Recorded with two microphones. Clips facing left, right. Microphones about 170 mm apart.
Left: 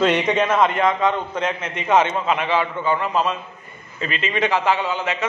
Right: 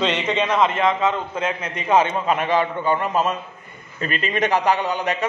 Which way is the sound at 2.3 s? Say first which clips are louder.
Right 1 dB; 45° right (ahead or behind).